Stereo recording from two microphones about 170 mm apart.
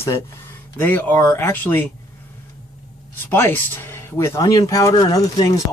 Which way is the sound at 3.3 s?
15° left (ahead or behind).